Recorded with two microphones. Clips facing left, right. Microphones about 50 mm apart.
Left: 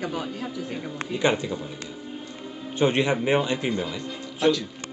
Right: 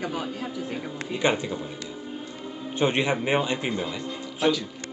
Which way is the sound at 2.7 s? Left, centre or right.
Centre.